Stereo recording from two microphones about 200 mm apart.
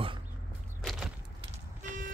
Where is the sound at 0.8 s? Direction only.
Centre (ahead or behind).